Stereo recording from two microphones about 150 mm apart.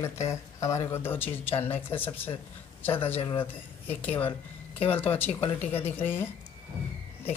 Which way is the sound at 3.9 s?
10° left (ahead or behind).